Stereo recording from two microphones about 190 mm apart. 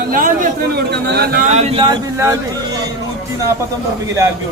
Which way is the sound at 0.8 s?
60° right (ahead or behind).